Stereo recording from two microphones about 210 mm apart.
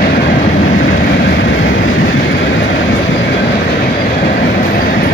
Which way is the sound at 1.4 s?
55° left (ahead or behind).